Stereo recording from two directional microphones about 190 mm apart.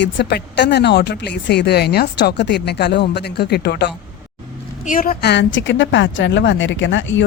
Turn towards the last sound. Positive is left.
turn(degrees=80)